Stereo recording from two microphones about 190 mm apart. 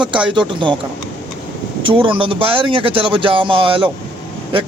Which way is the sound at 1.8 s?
25° right (ahead or behind).